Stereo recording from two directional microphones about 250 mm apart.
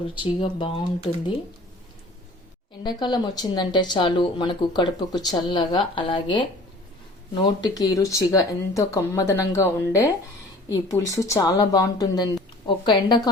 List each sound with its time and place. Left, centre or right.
0.1 s speech: centre
2.8 s speech: centre